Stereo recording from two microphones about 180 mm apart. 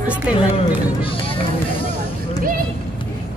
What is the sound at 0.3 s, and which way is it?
Speech, 5° right (ahead or behind).